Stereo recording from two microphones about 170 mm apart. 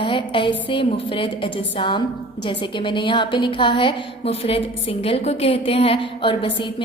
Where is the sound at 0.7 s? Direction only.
30° left (ahead or behind).